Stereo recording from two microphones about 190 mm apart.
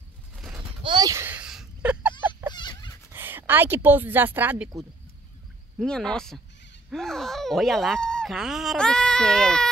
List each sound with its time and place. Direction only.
0.8 s a sound: 20° right (ahead or behind)
2.5 s dog: 25° left (ahead or behind)
3.1 s speech: 10° right (ahead or behind)
5.8 s speech: 5° left (ahead or behind)